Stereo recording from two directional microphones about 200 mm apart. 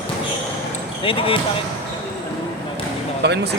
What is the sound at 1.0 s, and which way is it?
Speech, 25° left (ahead or behind).